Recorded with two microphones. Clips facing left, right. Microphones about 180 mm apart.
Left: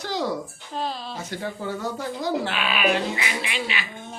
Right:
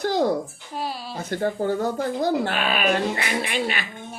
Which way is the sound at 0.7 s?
10° right (ahead or behind).